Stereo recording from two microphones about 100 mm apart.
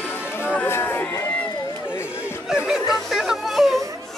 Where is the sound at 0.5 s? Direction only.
20° left (ahead or behind).